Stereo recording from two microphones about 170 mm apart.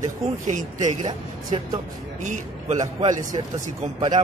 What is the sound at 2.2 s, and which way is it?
Speech, 45° right (ahead or behind).